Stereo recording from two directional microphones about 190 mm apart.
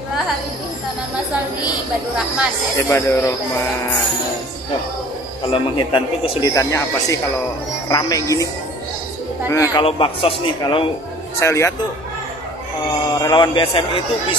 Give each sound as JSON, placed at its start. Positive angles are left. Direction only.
{"t": 2.1, "sound": "speech", "side_deg": -5}
{"t": 2.9, "sound": "a woman's voice", "side_deg": 15}
{"t": 5.5, "sound": "a woman's voice", "side_deg": 25}
{"t": 9.5, "sound": "a woman's voice", "side_deg": 15}
{"t": 9.8, "sound": "speech", "side_deg": 30}
{"t": 11.3, "sound": "a woman's voice", "side_deg": 15}
{"t": 13.1, "sound": "speech", "side_deg": 20}